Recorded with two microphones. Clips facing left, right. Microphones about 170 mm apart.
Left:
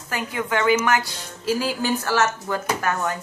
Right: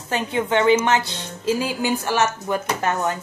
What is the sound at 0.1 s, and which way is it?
A woman's voice, 25° right (ahead or behind).